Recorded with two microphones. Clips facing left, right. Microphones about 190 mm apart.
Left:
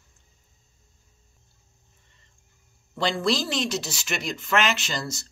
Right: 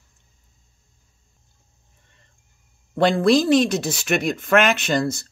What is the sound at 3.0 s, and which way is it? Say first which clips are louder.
Speech: right 9 dB; 55° right (ahead or behind).